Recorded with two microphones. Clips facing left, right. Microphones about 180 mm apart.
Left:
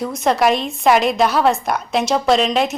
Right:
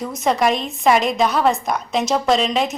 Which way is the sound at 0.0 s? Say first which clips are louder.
Left 2 dB; centre (ahead or behind).